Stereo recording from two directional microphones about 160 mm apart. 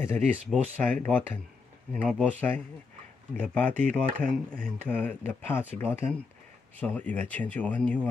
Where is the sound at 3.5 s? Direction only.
10° left (ahead or behind).